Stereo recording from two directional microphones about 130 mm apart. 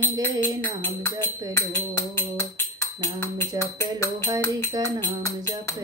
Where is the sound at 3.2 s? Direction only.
20° left (ahead or behind).